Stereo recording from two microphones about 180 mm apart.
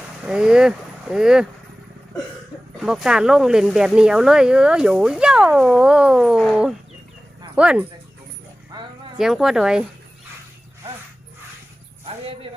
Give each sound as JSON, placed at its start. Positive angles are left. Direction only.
{"t": 0.3, "sound": "speech", "side_deg": -5}
{"t": 2.8, "sound": "speech", "side_deg": -5}
{"t": 9.1, "sound": "speech", "side_deg": 0}